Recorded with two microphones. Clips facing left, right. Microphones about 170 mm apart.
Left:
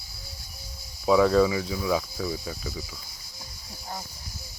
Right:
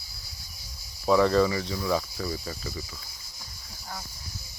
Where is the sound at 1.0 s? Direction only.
5° left (ahead or behind).